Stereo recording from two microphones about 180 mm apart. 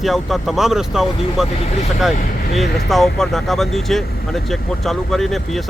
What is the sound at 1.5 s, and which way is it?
Speech, 35° left (ahead or behind).